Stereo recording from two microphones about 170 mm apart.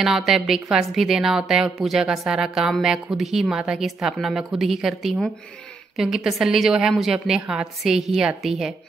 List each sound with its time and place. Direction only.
0.0 s a woman's voice: centre (ahead or behind)